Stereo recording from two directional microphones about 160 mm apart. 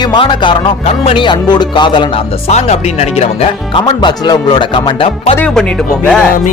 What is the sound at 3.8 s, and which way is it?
Speech, 25° left (ahead or behind).